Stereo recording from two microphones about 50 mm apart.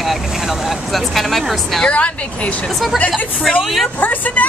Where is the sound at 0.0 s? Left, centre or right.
Centre.